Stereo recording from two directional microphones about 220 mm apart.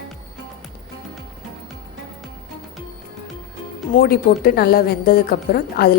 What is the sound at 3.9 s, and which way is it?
A woman's voice, 40° left (ahead or behind).